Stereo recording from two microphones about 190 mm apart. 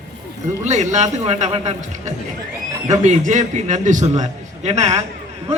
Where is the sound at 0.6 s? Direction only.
40° right (ahead or behind).